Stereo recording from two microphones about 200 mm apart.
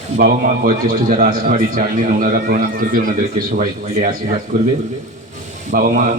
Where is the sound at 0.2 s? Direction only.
45° right (ahead or behind).